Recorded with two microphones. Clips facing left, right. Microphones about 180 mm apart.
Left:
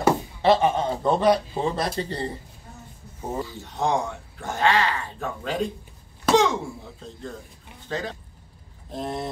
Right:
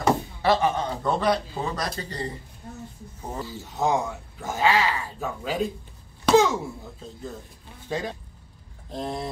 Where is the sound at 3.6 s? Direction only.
5° right (ahead or behind).